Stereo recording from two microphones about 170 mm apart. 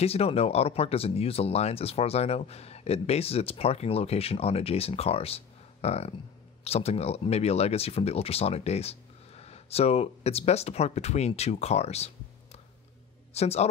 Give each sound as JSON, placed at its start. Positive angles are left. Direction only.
{"t": 0.0, "sound": "speech", "side_deg": 35}
{"t": 13.3, "sound": "speech", "side_deg": 40}